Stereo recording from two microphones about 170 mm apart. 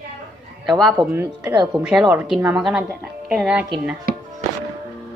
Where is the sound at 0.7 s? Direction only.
5° right (ahead or behind).